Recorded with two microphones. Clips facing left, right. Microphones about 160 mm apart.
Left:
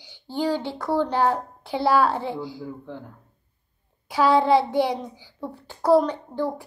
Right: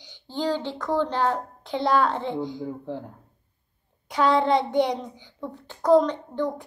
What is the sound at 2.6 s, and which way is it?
Speech, 30° right (ahead or behind).